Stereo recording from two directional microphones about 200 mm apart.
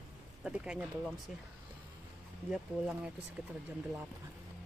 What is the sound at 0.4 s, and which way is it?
Speech, 5° right (ahead or behind).